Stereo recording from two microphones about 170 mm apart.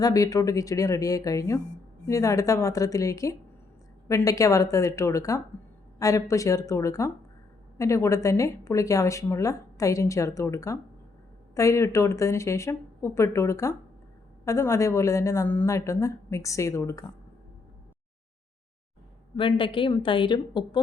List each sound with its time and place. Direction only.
0.0 s a woman's voice: 20° left (ahead or behind)
19.4 s a woman's voice: 30° left (ahead or behind)